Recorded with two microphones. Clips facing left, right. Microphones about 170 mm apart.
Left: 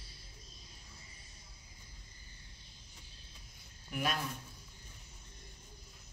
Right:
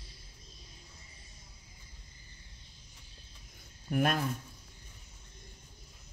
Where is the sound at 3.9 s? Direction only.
55° right (ahead or behind).